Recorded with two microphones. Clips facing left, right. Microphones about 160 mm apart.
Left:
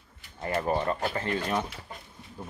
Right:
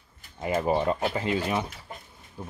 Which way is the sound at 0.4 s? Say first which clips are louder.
Right 3 dB; 15° right (ahead or behind).